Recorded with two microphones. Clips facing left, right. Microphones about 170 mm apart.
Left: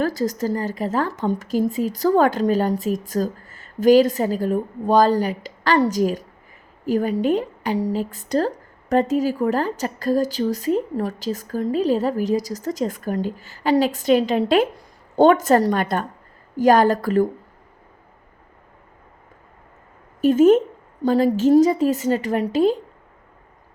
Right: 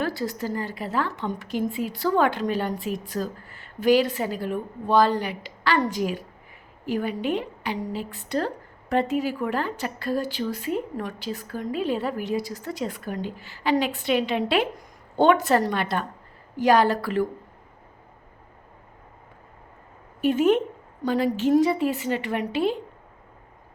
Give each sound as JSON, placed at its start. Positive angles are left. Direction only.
{"t": 0.0, "sound": "a woman's voice", "side_deg": 40}
{"t": 20.2, "sound": "a woman's voice", "side_deg": 45}